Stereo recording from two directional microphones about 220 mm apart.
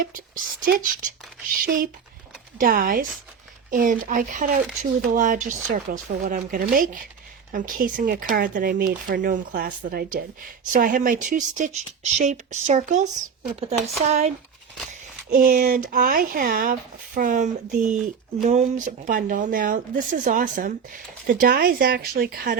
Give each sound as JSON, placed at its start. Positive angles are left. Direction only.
{"t": 0.0, "sound": "speech", "side_deg": -40}